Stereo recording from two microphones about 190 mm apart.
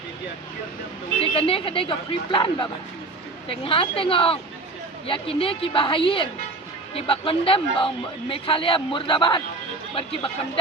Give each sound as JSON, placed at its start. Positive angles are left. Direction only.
{"t": 1.2, "sound": "a man's voice", "side_deg": 30}